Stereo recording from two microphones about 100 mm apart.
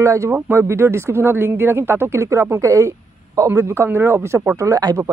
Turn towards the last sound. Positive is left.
turn(degrees=-35)  # may be behind; listen again after turning